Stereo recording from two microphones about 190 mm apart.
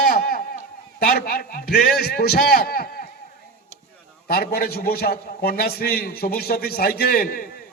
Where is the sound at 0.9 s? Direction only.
55° left (ahead or behind).